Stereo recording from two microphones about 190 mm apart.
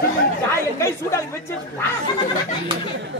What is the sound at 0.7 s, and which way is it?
Speech, 15° left (ahead or behind).